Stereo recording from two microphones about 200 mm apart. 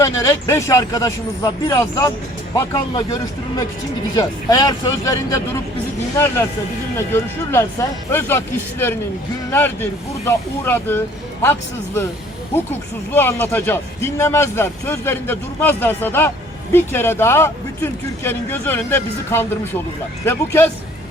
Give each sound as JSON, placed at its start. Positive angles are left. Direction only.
{"t": 0.0, "sound": "speech", "side_deg": 15}
{"t": 13.1, "sound": "speech", "side_deg": 10}